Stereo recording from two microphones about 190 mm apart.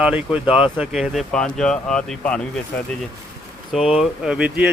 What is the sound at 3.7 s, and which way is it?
Speech, centre (ahead or behind).